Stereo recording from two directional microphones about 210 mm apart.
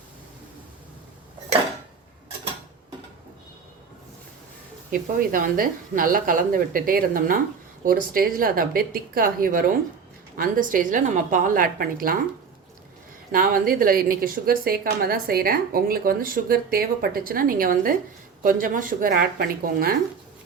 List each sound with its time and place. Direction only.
4.9 s a woman's voice: 40° right (ahead or behind)
13.3 s a woman's voice: 40° right (ahead or behind)